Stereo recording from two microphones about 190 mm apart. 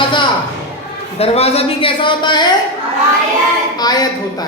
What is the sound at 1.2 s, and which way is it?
Speech, 30° left (ahead or behind).